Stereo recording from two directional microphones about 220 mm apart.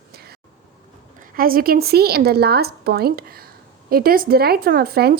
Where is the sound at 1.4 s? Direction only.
40° right (ahead or behind).